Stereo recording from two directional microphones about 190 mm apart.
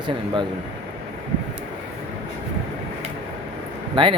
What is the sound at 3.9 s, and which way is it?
Speech, 25° right (ahead or behind).